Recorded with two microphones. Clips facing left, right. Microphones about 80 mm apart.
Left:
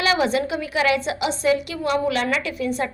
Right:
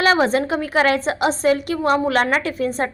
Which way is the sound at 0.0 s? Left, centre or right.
Right.